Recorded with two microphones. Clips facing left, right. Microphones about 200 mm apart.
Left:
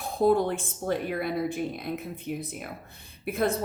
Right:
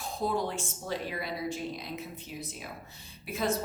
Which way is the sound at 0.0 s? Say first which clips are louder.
Left 8 dB; 55° left (ahead or behind).